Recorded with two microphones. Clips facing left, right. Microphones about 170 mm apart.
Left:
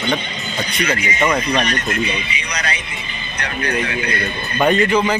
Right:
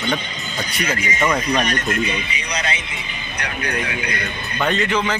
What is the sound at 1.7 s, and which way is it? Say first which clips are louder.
Speech: left 1 dB; 45° right (ahead or behind).